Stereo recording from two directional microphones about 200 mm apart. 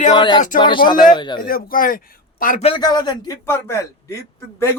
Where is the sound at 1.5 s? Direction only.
45° left (ahead or behind).